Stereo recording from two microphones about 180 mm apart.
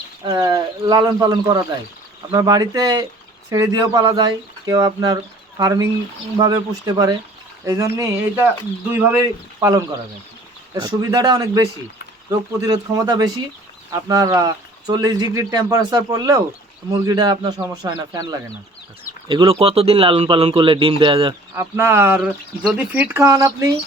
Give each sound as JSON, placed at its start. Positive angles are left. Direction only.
{"t": 0.3, "sound": "speech", "side_deg": -20}
{"t": 21.5, "sound": "speech", "side_deg": -15}